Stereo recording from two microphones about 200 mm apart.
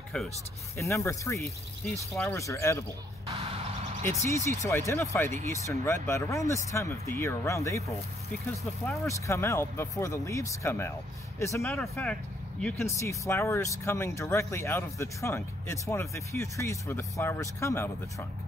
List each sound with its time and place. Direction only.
0.7 s speech: 15° left (ahead or behind)
3.3 s a sound: 30° right (ahead or behind)
4.6 s speech: 15° left (ahead or behind)
11.7 s speech: centre (ahead or behind)